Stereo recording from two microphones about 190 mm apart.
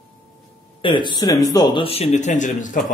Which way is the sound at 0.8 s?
25° left (ahead or behind).